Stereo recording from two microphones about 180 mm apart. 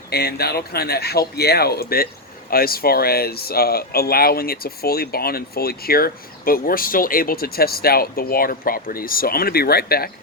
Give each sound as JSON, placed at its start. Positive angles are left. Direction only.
{"t": 0.1, "sound": "speech", "side_deg": 60}